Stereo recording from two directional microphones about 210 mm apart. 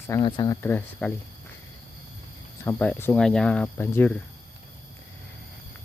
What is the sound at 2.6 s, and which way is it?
Speech, 10° left (ahead or behind).